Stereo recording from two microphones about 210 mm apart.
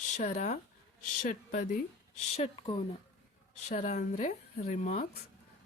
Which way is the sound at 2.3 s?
30° left (ahead or behind).